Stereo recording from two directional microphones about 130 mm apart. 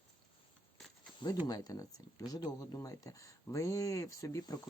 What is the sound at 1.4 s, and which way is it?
Speech, 30° left (ahead or behind).